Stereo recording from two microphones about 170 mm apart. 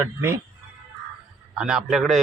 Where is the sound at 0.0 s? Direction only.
15° right (ahead or behind).